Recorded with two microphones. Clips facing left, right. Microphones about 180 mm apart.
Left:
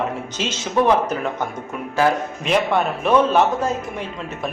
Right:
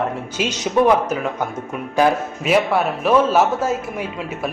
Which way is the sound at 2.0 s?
15° right (ahead or behind).